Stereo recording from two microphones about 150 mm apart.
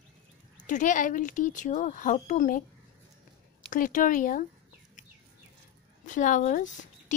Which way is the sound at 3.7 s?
60° left (ahead or behind).